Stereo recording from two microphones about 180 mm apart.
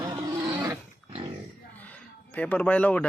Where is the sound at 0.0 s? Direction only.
20° right (ahead or behind).